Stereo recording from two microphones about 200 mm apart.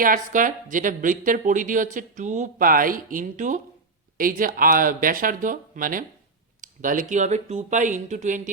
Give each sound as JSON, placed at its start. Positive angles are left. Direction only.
{"t": 0.0, "sound": "a woman's voice", "side_deg": -40}